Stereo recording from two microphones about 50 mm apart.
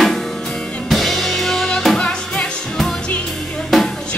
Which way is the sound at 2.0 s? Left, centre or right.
Left.